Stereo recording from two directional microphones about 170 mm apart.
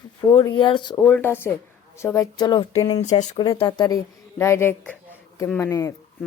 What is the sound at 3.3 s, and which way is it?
Speech, 30° left (ahead or behind).